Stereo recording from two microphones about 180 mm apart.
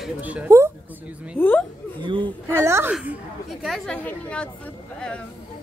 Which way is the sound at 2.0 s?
25° right (ahead or behind).